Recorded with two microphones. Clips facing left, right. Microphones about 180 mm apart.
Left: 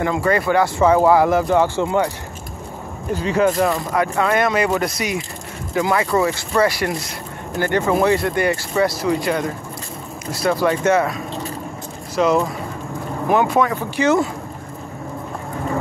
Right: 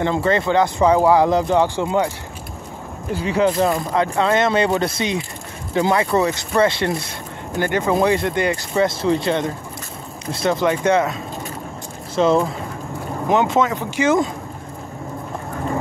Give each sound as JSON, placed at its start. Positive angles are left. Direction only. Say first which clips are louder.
{"t": 0.0, "sound": "speech", "louder": "even", "side_deg": -25}
{"t": 3.1, "sound": "speech", "louder": "left 1 dB", "side_deg": -10}